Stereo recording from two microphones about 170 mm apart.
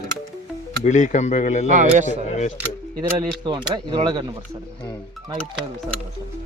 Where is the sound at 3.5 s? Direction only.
25° right (ahead or behind).